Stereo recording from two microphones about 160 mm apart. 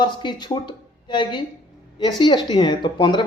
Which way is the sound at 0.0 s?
30° left (ahead or behind).